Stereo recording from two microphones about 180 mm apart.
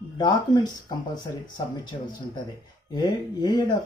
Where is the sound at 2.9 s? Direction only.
20° left (ahead or behind).